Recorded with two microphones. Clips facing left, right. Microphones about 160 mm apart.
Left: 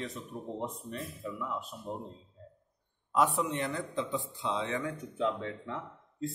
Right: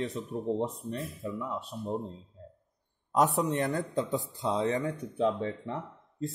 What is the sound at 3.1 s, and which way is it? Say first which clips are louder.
A man's voice: right 3 dB; 40° right (ahead or behind).